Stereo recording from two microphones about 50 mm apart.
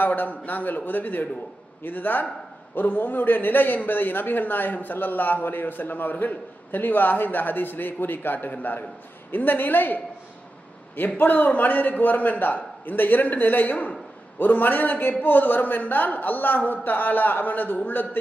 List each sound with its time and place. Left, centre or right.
0.0 s a man's voice: left
11.1 s a man's voice: left